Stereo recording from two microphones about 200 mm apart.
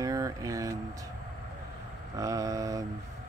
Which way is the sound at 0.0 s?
15° right (ahead or behind).